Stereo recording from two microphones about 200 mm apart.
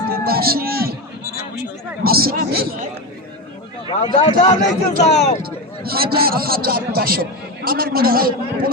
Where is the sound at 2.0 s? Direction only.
50° right (ahead or behind).